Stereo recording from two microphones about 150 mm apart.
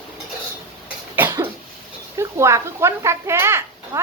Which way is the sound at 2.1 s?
20° right (ahead or behind).